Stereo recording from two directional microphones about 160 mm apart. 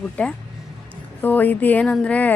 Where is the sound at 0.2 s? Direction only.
10° left (ahead or behind).